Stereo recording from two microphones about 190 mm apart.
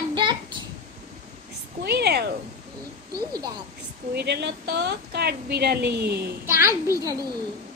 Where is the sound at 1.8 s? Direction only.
60° right (ahead or behind).